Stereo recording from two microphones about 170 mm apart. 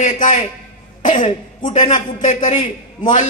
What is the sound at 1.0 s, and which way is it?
Speech, 35° left (ahead or behind).